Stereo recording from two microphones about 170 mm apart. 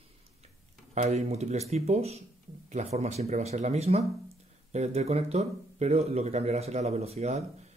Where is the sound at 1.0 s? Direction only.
40° right (ahead or behind).